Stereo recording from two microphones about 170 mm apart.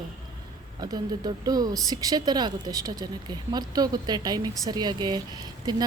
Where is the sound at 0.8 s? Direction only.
25° right (ahead or behind).